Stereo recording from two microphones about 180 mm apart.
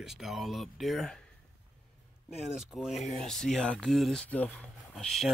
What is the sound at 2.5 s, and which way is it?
Speech, 5° right (ahead or behind).